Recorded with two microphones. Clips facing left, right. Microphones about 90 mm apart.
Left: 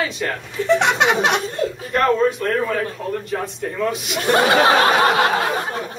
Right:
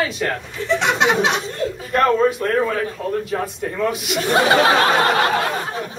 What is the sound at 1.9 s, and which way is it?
Speech, 5° right (ahead or behind).